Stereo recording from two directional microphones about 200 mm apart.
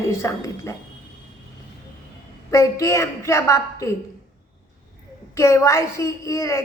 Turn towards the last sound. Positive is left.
turn(degrees=15)  # may be behind; listen again after turning